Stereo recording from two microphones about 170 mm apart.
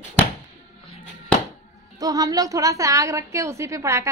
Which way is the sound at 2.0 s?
20° right (ahead or behind).